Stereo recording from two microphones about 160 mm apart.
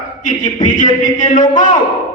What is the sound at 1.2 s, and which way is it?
Speech, 55° left (ahead or behind).